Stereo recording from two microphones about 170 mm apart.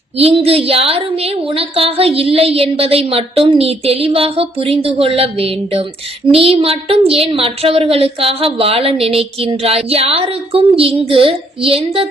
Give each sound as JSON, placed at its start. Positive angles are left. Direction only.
{"t": 0.2, "sound": "speech", "side_deg": -35}